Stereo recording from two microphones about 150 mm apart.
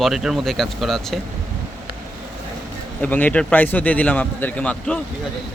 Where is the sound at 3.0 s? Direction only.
10° left (ahead or behind).